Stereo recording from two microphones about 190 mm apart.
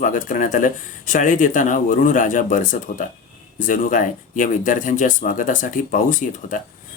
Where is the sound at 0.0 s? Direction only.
45° left (ahead or behind).